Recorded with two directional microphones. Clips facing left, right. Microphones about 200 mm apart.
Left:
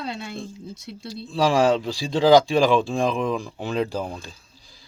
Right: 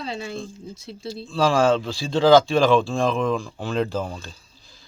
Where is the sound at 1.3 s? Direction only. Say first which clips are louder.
Even; 15° left (ahead or behind).